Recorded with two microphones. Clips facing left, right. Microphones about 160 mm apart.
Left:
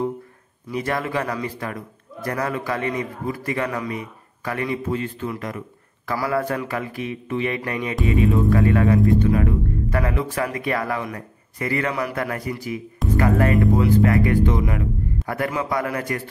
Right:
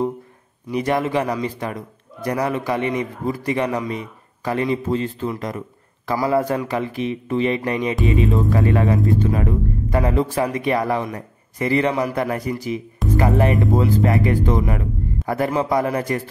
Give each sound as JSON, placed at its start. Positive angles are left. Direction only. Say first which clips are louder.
{"t": 0.7, "sound": "speech", "louder": "right 4 dB", "side_deg": -20}
{"t": 14.4, "sound": "speech", "louder": "right 1 dB", "side_deg": -35}